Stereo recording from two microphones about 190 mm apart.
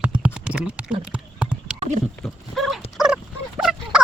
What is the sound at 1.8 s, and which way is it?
Horse, 40° right (ahead or behind).